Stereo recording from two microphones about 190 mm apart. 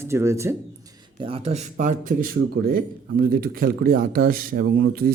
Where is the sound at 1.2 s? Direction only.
30° right (ahead or behind).